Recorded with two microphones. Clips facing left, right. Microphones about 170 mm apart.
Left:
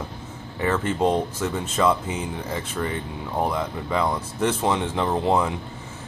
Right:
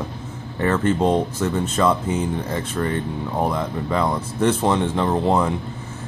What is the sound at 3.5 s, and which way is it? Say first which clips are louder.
Speech: right 3 dB; 5° left (ahead or behind).